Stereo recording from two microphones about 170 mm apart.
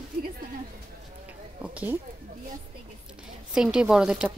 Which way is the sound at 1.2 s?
10° right (ahead or behind).